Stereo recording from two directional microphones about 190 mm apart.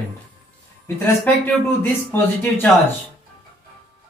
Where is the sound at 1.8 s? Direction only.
10° left (ahead or behind).